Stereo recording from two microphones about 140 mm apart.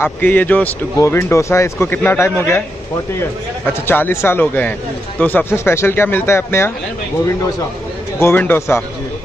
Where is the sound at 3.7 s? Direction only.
15° left (ahead or behind).